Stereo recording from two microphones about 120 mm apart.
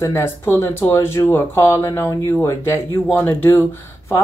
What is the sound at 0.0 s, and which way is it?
Speech, 20° left (ahead or behind).